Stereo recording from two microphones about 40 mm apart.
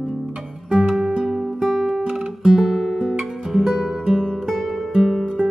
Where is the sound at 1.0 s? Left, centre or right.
Centre.